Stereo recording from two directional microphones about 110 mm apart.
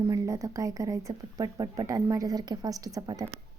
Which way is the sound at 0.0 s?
30° right (ahead or behind).